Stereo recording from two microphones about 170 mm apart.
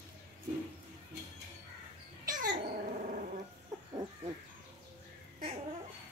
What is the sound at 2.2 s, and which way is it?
Dog, 55° right (ahead or behind).